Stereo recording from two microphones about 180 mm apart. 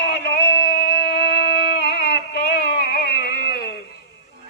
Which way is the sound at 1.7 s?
65° left (ahead or behind).